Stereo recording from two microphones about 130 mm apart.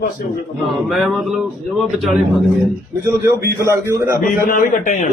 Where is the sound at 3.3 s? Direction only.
20° right (ahead or behind).